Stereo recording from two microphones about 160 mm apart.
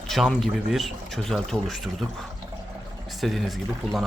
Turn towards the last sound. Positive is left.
turn(degrees=0)  # may be behind; listen again after turning